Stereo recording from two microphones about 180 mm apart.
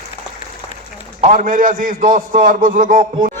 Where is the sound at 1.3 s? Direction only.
50° right (ahead or behind).